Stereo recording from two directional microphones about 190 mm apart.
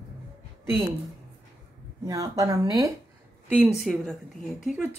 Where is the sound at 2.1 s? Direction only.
20° right (ahead or behind).